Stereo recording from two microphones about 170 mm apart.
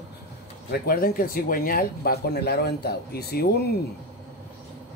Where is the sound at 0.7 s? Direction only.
60° left (ahead or behind).